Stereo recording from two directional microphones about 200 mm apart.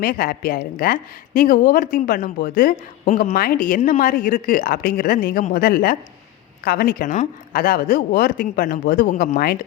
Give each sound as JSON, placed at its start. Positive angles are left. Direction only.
{"t": 0.0, "sound": "speech", "side_deg": 45}